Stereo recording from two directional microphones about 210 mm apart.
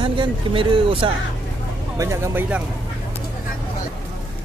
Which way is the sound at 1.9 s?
15° right (ahead or behind).